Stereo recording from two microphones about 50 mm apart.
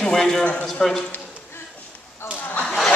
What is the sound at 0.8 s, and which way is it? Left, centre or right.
Speech, centre.